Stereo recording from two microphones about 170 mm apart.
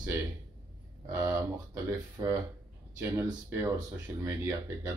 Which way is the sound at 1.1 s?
15° right (ahead or behind).